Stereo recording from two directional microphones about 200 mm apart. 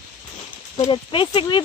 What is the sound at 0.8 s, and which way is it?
Speech, 25° left (ahead or behind).